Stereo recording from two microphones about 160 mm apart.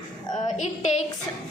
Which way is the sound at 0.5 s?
45° left (ahead or behind).